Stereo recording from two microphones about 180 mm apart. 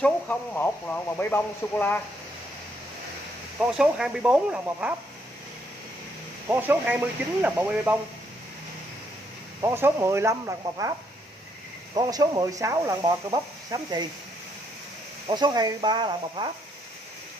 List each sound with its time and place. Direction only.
0.0 s speech: 10° left (ahead or behind)
3.5 s speech: 5° right (ahead or behind)
6.5 s speech: 10° right (ahead or behind)
9.6 s speech: 15° right (ahead or behind)
15.2 s speech: 25° right (ahead or behind)